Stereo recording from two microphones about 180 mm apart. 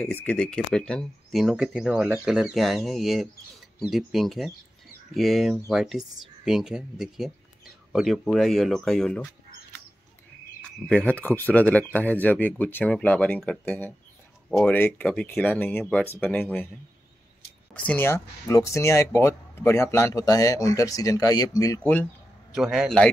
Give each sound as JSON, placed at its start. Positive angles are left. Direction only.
{"t": 0.0, "sound": "speech", "side_deg": 10}
{"t": 10.6, "sound": "speech", "side_deg": 5}
{"t": 17.7, "sound": "speech", "side_deg": 10}
{"t": 22.5, "sound": "speech", "side_deg": 0}